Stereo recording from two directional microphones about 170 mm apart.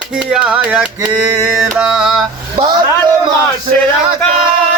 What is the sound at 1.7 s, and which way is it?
Speech, 5° right (ahead or behind).